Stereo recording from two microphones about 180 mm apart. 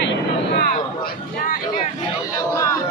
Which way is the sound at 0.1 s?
65° left (ahead or behind).